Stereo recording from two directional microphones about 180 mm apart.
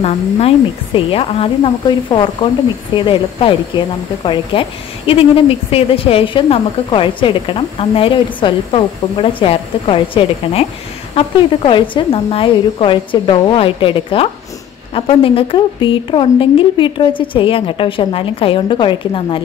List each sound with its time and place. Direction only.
0.0 s a woman's voice: 35° left (ahead or behind)